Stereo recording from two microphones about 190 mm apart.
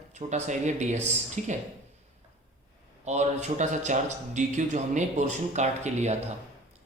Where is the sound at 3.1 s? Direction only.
35° right (ahead or behind).